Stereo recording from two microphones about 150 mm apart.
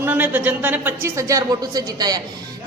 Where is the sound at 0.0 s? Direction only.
10° right (ahead or behind).